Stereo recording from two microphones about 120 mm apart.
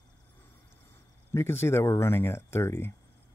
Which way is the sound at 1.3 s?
20° left (ahead or behind).